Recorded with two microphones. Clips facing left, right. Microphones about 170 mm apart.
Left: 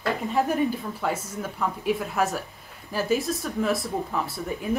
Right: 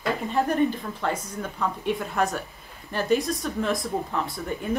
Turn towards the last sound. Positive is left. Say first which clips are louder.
# even
turn(degrees=5)  # may be behind; listen again after turning